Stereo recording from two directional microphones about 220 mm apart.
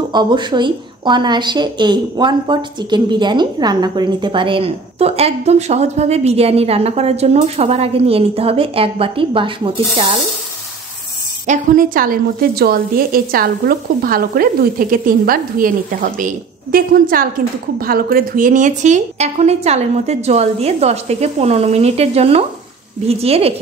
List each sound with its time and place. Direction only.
0.1 s a woman's voice: 20° right (ahead or behind)
11.4 s a woman's voice: 35° right (ahead or behind)